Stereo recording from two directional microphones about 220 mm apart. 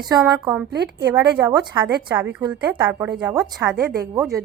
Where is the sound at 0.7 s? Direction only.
50° right (ahead or behind).